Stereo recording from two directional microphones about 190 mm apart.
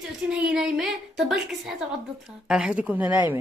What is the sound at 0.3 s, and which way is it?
A woman's voice, 5° right (ahead or behind).